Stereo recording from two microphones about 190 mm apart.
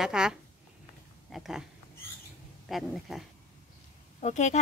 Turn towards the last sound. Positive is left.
turn(degrees=40)  # may be behind; listen again after turning